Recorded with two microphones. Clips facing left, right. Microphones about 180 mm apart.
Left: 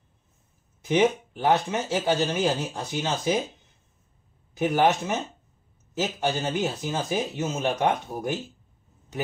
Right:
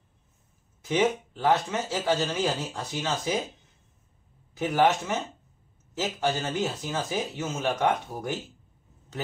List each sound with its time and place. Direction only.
0.8 s speech: 20° left (ahead or behind)
4.6 s speech: 15° left (ahead or behind)